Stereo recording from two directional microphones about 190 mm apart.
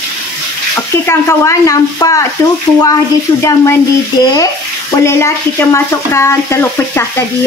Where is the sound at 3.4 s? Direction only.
15° left (ahead or behind).